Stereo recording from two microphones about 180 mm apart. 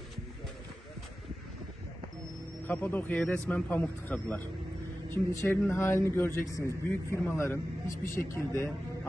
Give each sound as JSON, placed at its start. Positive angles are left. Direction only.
{"t": 2.6, "sound": "speech", "side_deg": 10}